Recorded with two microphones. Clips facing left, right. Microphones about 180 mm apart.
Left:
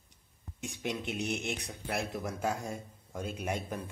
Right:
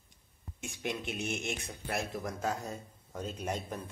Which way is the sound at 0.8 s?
15° left (ahead or behind).